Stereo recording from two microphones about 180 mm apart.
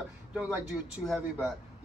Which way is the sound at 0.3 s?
5° right (ahead or behind).